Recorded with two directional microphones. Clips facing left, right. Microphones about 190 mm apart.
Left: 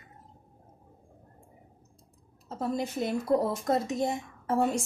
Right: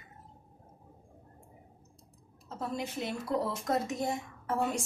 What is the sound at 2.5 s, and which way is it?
Speech, 40° left (ahead or behind).